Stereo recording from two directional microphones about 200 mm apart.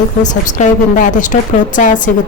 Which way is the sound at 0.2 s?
40° left (ahead or behind).